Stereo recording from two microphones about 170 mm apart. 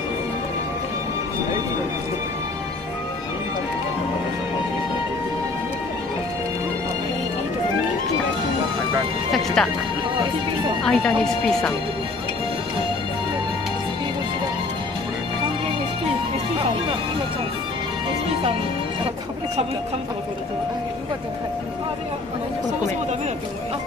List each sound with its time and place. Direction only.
9.6 s speech: 5° left (ahead or behind)
10.2 s speech: 25° right (ahead or behind)
10.8 s speech: centre (ahead or behind)
16.5 s music: 30° right (ahead or behind)